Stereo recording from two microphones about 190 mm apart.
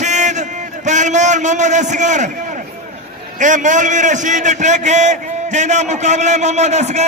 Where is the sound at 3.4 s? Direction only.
40° right (ahead or behind).